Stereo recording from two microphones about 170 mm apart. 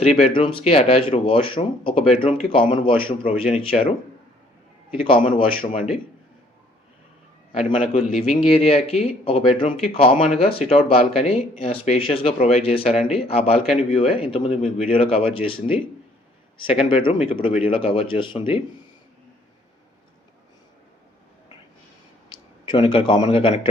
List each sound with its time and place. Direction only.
0.0 s speech: 35° left (ahead or behind)
4.9 s speech: 30° left (ahead or behind)
7.6 s speech: 35° left (ahead or behind)
22.7 s speech: 30° left (ahead or behind)